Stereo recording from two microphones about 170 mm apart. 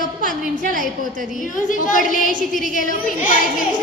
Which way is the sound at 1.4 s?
50° left (ahead or behind).